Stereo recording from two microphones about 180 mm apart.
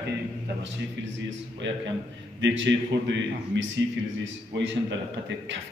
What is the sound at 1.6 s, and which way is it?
A man's voice, 85° right.